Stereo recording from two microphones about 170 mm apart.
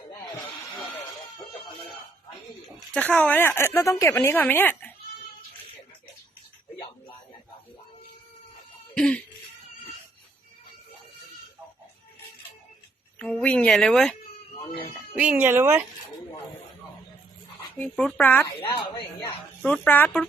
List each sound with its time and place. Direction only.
2.9 s speech: 10° left (ahead or behind)
9.0 s speech: 5° left (ahead or behind)
13.1 s speech: 10° left (ahead or behind)
14.5 s a sound: 30° left (ahead or behind)
15.1 s speech: 10° right (ahead or behind)
17.7 s speech: 10° left (ahead or behind)
18.4 s a woman's voice: 25° left (ahead or behind)
19.2 s speech: 10° left (ahead or behind)